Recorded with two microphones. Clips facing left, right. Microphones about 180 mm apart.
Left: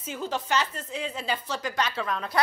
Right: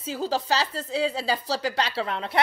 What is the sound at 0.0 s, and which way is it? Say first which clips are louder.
A woman's voice: right 4 dB; 35° right (ahead or behind).